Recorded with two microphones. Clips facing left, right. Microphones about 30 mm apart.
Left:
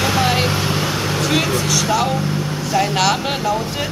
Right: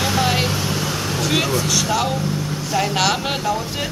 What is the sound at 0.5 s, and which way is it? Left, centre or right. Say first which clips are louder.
Vehicle: left 3 dB; left.